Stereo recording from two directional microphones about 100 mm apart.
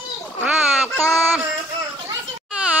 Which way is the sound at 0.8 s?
30° left (ahead or behind).